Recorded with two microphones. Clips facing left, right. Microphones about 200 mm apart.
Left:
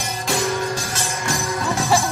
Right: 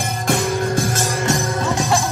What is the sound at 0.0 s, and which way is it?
Music, 50° right (ahead or behind).